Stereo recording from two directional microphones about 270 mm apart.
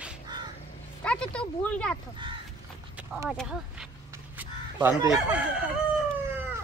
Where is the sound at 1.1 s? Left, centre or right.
Centre.